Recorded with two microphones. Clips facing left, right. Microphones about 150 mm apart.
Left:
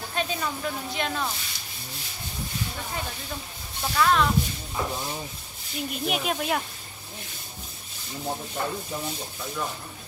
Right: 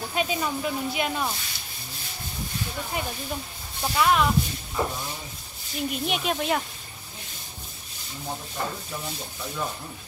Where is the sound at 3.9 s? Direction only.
15° right (ahead or behind).